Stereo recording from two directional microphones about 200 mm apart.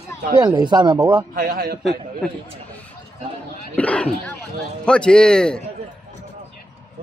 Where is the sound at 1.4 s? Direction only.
45° right (ahead or behind).